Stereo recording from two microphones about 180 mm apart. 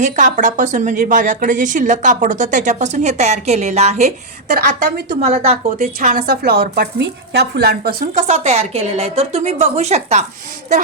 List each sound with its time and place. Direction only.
0.0 s a woman's voice: 45° right (ahead or behind)
5.2 s a woman's voice: 35° right (ahead or behind); by 8.2 s 55° right (ahead or behind)
8.3 s a woman's voice: 40° right (ahead or behind)